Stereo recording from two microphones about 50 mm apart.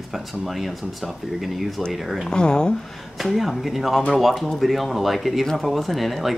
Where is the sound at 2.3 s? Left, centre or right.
Centre.